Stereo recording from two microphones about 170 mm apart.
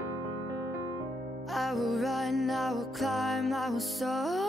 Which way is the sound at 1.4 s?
Centre (ahead or behind).